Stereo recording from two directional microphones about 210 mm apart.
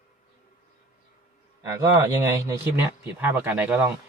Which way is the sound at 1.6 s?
15° right (ahead or behind).